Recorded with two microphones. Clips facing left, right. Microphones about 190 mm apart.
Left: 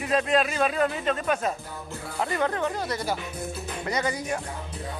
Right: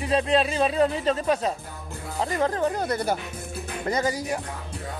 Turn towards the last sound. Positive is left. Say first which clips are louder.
# right 3 dB
turn(degrees=-40)  # may be behind; listen again after turning